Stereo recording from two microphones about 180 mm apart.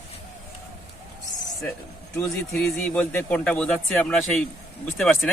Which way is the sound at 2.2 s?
10° left (ahead or behind).